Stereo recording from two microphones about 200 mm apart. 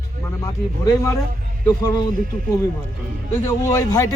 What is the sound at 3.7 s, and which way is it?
Speech, 15° left (ahead or behind).